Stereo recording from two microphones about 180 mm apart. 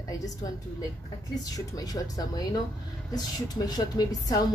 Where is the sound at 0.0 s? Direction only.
20° left (ahead or behind).